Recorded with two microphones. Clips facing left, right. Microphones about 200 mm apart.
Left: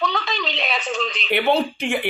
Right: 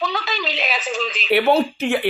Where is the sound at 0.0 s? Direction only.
Centre (ahead or behind).